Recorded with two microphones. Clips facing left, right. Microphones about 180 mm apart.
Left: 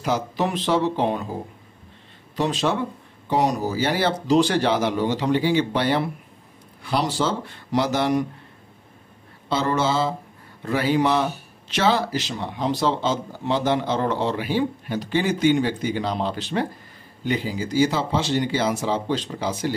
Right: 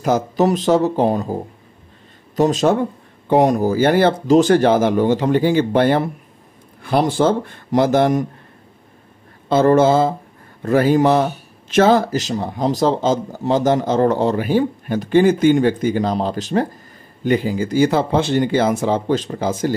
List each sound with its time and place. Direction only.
0.0 s speech: 45° right (ahead or behind)
2.3 s a man's voice: 45° right (ahead or behind)
9.5 s a man's voice: 50° right (ahead or behind)